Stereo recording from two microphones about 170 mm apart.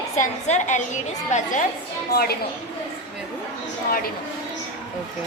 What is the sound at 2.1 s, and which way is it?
Speech, 65° left (ahead or behind).